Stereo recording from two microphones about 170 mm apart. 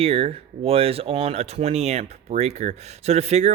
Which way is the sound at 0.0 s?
35° right (ahead or behind).